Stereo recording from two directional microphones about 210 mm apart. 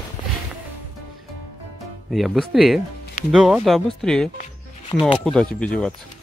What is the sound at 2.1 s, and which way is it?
Speech, centre (ahead or behind).